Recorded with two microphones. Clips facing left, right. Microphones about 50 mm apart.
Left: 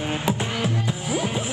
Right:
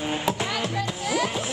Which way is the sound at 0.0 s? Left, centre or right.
Centre.